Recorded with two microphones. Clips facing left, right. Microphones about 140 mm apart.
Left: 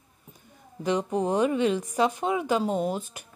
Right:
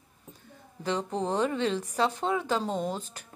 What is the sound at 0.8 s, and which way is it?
A woman's voice, 15° left (ahead or behind).